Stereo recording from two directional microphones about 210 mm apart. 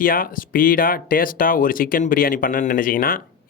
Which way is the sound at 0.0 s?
40° left (ahead or behind).